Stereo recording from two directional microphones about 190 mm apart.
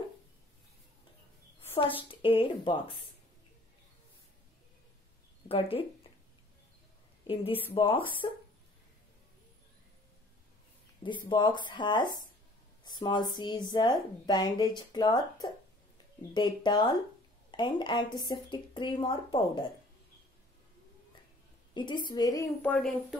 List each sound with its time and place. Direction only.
2.0 s a woman's voice: 30° left (ahead or behind)
5.5 s a woman's voice: 30° left (ahead or behind)
7.7 s a woman's voice: 25° left (ahead or behind)
11.0 s a woman's voice: 25° left (ahead or behind)
21.7 s a woman's voice: 25° left (ahead or behind)
22.7 s speech: centre (ahead or behind)